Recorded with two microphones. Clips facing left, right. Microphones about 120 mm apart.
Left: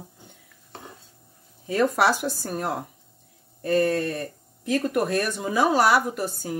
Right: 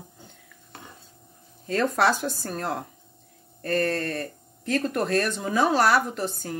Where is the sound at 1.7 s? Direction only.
10° left (ahead or behind).